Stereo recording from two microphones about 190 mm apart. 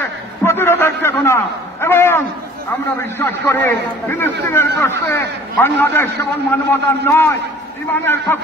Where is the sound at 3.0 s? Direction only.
10° left (ahead or behind).